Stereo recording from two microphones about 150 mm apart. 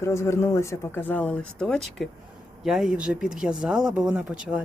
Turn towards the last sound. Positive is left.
turn(degrees=-5)  # may be behind; listen again after turning